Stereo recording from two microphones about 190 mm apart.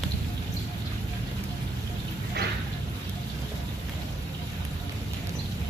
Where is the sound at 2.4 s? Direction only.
60° right (ahead or behind).